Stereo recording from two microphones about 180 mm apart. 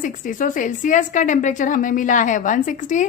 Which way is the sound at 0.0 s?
45° left (ahead or behind).